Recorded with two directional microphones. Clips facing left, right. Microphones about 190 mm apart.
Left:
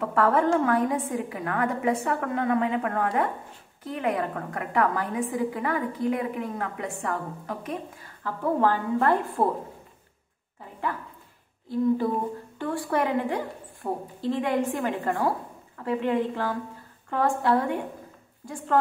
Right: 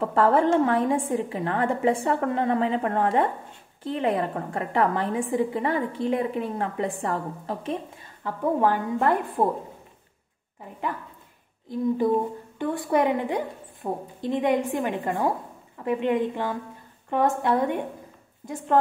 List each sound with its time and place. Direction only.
0.0 s a woman's voice: 30° right (ahead or behind)
11.7 s a woman's voice: 20° right (ahead or behind)